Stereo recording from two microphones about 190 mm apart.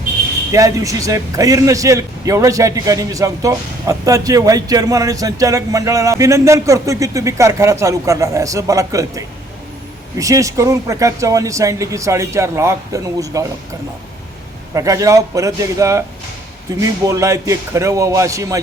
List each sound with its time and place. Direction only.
0.5 s a man's voice: 15° right (ahead or behind)
14.7 s a man's voice: 15° right (ahead or behind)